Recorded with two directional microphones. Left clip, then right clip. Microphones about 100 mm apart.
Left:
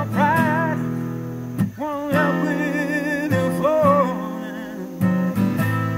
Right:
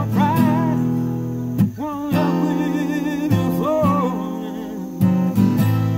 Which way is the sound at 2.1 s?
30° right (ahead or behind).